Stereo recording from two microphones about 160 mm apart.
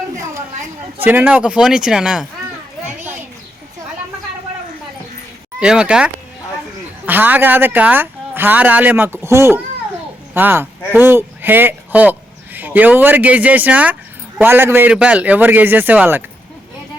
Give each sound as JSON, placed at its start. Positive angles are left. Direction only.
{"t": 0.9, "sound": "a man's voice", "side_deg": -10}
{"t": 2.8, "sound": "children playing", "side_deg": -15}
{"t": 5.5, "sound": "a man's voice", "side_deg": -5}